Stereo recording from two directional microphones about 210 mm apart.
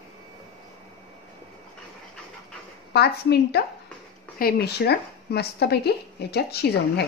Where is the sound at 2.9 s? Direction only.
50° left (ahead or behind).